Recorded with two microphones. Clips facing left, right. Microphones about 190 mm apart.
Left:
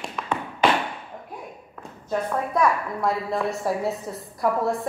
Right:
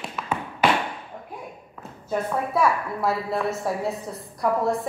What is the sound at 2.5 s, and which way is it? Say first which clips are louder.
A woman's voice: left 1 dB; 5° right (ahead or behind).